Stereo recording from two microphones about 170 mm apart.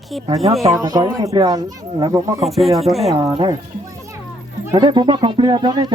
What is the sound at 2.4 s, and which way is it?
Speech, centre (ahead or behind).